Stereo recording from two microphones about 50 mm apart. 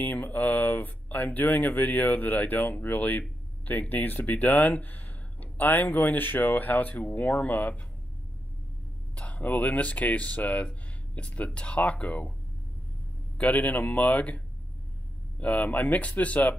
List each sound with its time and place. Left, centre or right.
0.0 s speech: left
9.1 s speech: left
13.4 s speech: left